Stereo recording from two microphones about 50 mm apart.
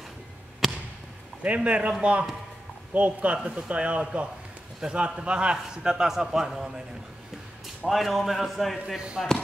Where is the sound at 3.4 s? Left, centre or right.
Centre.